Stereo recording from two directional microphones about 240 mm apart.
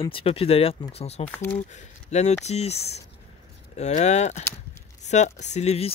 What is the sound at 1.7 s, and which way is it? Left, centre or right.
Speech, left.